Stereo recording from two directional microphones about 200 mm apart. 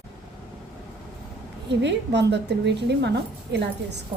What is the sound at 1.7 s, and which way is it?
A woman's voice, 60° right (ahead or behind).